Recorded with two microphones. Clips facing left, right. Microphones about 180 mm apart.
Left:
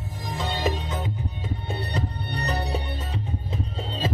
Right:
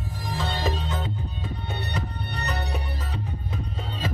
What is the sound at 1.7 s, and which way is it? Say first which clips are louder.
Music: left 3 dB; 30° left (ahead or behind).